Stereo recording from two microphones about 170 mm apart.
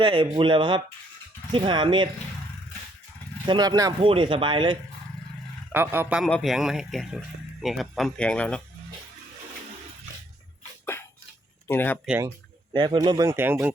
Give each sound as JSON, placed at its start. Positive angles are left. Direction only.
{"t": 0.0, "sound": "speech", "side_deg": -30}
{"t": 3.4, "sound": "speech", "side_deg": -25}
{"t": 5.7, "sound": "a man's voice", "side_deg": -10}
{"t": 6.2, "sound": "speech", "side_deg": 0}
{"t": 11.7, "sound": "speech", "side_deg": 10}
{"t": 12.7, "sound": "speech", "side_deg": -25}